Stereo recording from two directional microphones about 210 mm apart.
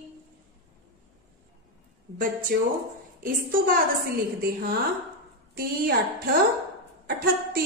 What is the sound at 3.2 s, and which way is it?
Speech, 40° right (ahead or behind).